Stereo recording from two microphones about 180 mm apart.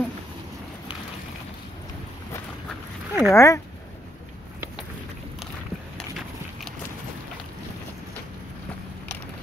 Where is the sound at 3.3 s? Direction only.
15° left (ahead or behind).